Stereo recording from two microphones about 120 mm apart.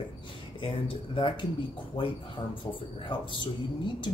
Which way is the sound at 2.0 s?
40° left (ahead or behind).